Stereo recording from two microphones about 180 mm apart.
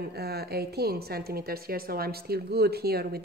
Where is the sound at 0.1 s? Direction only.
60° right (ahead or behind).